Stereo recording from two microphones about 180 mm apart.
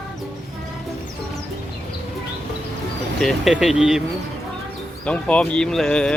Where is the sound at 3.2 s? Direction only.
Centre (ahead or behind).